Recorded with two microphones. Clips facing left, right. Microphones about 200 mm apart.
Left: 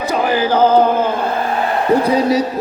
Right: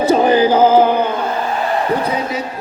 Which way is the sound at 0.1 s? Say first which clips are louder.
Right 3 dB; 25° right (ahead or behind).